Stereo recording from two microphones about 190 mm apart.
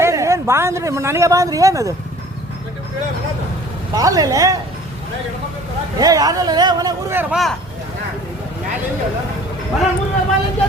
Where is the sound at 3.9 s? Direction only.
20° right (ahead or behind).